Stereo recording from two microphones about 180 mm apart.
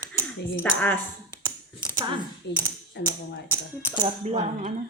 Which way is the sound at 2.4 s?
70° left (ahead or behind).